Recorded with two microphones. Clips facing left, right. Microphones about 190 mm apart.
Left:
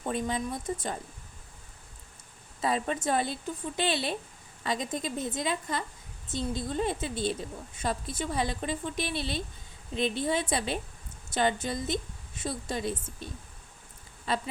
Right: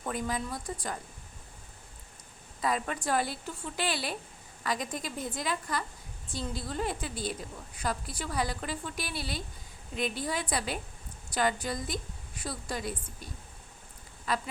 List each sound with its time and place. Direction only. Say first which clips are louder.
0.0 s a woman's voice: left 3 dB; 25° left (ahead or behind)
2.6 s a woman's voice: left 2 dB; 25° left (ahead or behind)
14.3 s a woman's voice: left 2 dB; 25° left (ahead or behind)